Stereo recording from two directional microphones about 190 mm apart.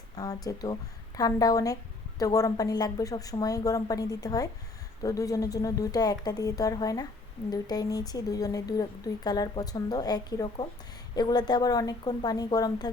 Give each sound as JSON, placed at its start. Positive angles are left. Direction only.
{"t": 0.2, "sound": "a woman's voice", "side_deg": 20}